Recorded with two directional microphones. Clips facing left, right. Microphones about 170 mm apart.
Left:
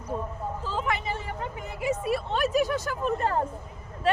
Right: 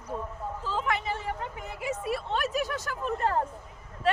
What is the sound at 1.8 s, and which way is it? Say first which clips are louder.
Speech: left 4 dB; 20° left (ahead or behind).